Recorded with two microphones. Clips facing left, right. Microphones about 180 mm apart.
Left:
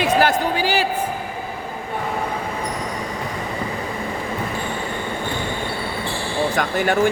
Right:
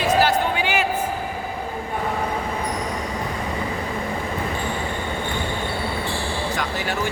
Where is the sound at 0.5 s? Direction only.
35° left (ahead or behind).